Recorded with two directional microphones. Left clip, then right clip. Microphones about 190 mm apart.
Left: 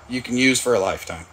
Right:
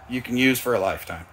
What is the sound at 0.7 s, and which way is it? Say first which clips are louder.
Speech: left 3 dB; 15° left (ahead or behind).